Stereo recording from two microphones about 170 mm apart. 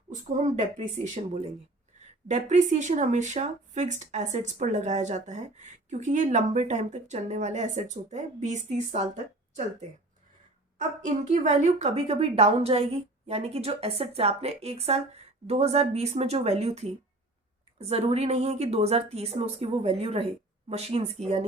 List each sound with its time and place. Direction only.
0.1 s speech: 45° right (ahead or behind)
2.2 s speech: 45° right (ahead or behind)
11.3 s a woman's voice: 45° right (ahead or behind)